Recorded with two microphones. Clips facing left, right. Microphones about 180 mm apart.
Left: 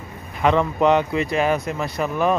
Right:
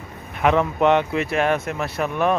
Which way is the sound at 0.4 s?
5° right (ahead or behind).